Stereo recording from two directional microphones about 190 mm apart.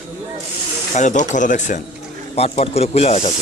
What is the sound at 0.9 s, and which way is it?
Speech, 40° left (ahead or behind).